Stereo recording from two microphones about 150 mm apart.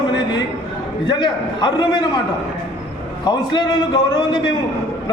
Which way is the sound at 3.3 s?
30° left (ahead or behind).